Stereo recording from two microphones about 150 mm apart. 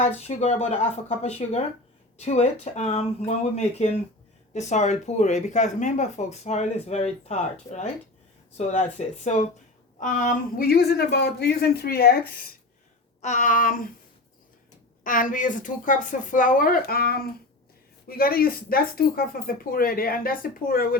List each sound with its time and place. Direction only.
0.0 s speech: 50° left (ahead or behind)
8.5 s speech: 50° left (ahead or behind); by 12.1 s 90° left
13.2 s speech: 55° left (ahead or behind)
15.0 s speech: 60° left (ahead or behind); by 21.0 s 75° left (ahead or behind)